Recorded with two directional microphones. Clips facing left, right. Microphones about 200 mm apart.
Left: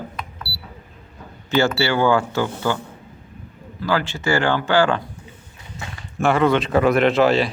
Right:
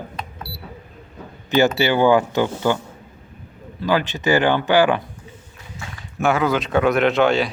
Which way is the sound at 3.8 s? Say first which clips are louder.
Right 2 dB; 20° right (ahead or behind).